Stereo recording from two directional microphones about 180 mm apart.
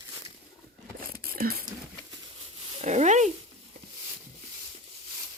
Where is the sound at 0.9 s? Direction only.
55° right (ahead or behind).